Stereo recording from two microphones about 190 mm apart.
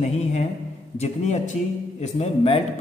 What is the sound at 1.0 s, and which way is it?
A man's voice, 40° left (ahead or behind).